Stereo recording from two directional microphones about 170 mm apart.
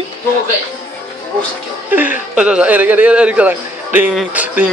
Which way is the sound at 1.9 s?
10° right (ahead or behind).